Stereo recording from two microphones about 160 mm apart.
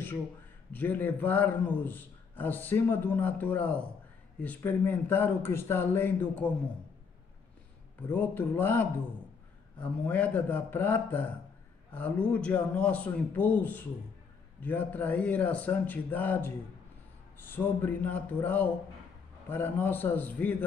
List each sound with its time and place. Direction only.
0.7 s a man's voice: 10° left (ahead or behind)
8.1 s a man's voice: 10° left (ahead or behind)